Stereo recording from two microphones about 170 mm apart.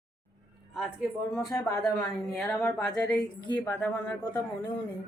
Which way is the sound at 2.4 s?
5° left (ahead or behind).